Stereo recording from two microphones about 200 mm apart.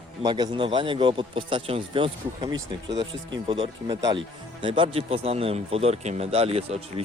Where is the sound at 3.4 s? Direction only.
25° right (ahead or behind).